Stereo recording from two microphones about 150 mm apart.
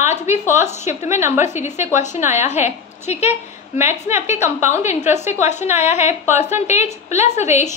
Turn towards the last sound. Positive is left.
turn(degrees=50)  # may be behind; listen again after turning